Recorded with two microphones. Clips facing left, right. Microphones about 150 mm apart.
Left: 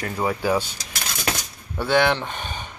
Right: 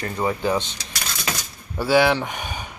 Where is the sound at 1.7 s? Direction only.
5° right (ahead or behind).